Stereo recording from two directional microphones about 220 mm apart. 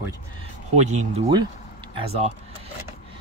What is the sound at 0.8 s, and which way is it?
Speech, 30° right (ahead or behind).